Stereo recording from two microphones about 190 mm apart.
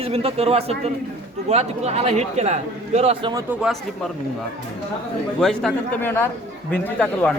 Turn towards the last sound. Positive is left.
turn(degrees=5)  # may be behind; listen again after turning